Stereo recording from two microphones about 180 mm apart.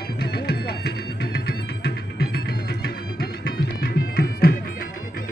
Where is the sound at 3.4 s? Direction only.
60° left (ahead or behind).